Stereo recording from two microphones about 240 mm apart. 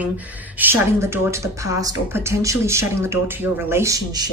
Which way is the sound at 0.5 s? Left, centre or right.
Centre.